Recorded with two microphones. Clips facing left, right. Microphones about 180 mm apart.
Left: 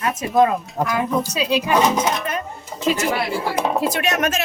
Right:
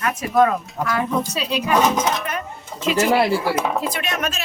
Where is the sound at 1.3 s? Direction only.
Centre (ahead or behind).